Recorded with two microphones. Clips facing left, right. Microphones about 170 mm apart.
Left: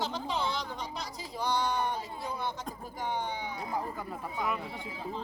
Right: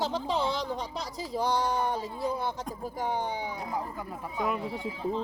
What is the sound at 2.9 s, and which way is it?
Speech, 35° right (ahead or behind).